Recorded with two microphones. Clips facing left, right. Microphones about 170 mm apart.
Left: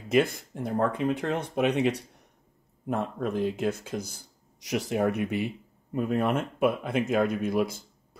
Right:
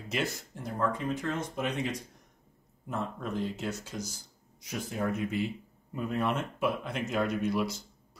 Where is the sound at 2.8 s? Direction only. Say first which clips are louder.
Left 6 dB; 55° left (ahead or behind).